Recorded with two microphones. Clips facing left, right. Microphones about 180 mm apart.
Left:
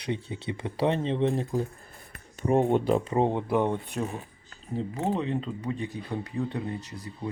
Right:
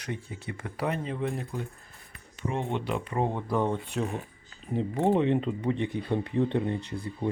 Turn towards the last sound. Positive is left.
turn(degrees=-30)  # may be behind; listen again after turning